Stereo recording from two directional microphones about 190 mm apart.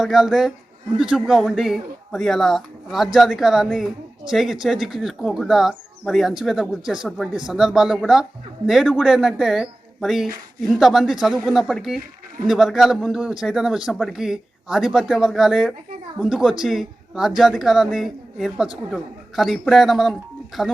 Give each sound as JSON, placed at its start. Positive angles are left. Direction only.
{"t": 0.0, "sound": "speech", "side_deg": 0}